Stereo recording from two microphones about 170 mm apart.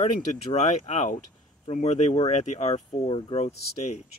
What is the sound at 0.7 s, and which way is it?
Speech, 45° left (ahead or behind).